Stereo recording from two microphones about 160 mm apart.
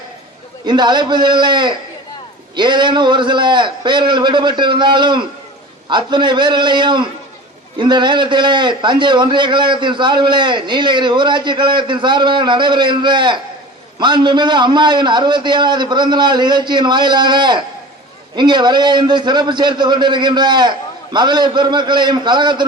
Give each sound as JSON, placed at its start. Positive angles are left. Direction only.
{"t": 0.6, "sound": "a man's voice", "side_deg": -25}